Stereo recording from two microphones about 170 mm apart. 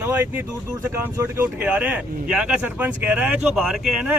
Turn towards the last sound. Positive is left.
turn(degrees=-5)  # may be behind; listen again after turning